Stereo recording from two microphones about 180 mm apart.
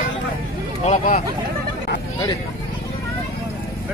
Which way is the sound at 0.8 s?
40° left (ahead or behind).